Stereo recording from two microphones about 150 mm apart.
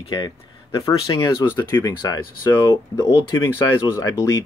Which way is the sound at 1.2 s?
15° left (ahead or behind).